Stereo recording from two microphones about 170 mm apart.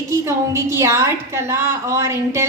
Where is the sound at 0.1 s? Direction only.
15° right (ahead or behind).